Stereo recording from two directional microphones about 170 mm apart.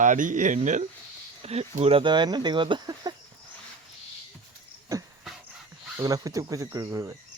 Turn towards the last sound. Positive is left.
turn(degrees=-20)  # may be behind; listen again after turning